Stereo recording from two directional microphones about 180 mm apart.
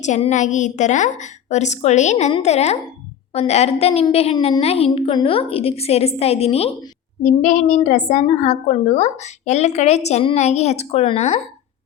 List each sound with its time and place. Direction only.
0.0 s a woman's voice: 40° left (ahead or behind)